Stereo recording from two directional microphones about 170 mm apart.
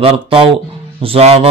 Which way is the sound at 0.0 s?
35° right (ahead or behind).